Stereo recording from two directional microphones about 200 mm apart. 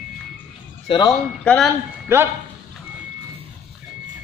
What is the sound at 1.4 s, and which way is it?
Speech, 5° left (ahead or behind).